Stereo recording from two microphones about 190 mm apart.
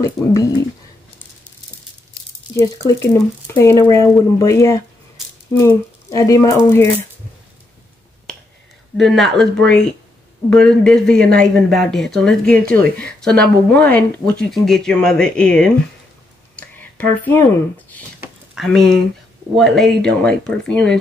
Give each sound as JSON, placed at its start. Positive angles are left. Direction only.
{"t": 0.0, "sound": "speech", "side_deg": 15}
{"t": 2.6, "sound": "speech", "side_deg": 20}
{"t": 8.3, "sound": "finger snapping", "side_deg": 5}
{"t": 8.9, "sound": "speech", "side_deg": 0}
{"t": 10.5, "sound": "speech", "side_deg": 5}
{"t": 17.0, "sound": "speech", "side_deg": 10}
{"t": 18.2, "sound": "a sound", "side_deg": 0}
{"t": 19.5, "sound": "speech", "side_deg": 0}